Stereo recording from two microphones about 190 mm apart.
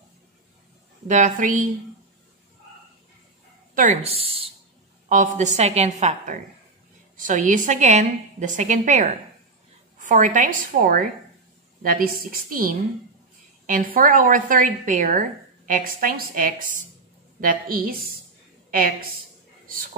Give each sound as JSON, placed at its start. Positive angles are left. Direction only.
{"t": 1.0, "sound": "a woman's voice", "side_deg": -40}
{"t": 3.7, "sound": "a woman's voice", "side_deg": -40}
{"t": 5.0, "sound": "a woman's voice", "side_deg": -40}